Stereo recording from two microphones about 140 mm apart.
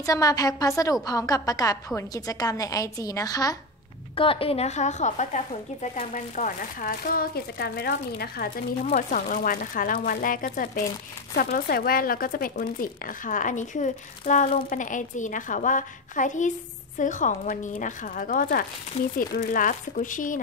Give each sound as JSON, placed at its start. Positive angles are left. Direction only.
{"t": 0.0, "sound": "a woman's voice", "side_deg": 25}
{"t": 4.1, "sound": "a woman's voice", "side_deg": 40}
{"t": 8.9, "sound": "speech", "side_deg": 70}